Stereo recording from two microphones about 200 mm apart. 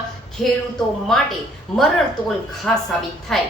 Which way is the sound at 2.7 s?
5° left (ahead or behind).